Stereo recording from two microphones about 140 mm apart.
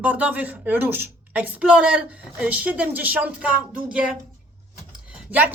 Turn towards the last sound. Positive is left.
turn(degrees=-10)  # may be behind; listen again after turning